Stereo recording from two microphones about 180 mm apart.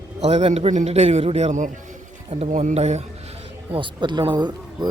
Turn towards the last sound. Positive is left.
turn(degrees=-25)  # may be behind; listen again after turning